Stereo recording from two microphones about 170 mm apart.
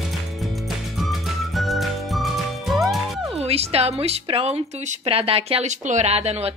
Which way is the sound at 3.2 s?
35° right (ahead or behind).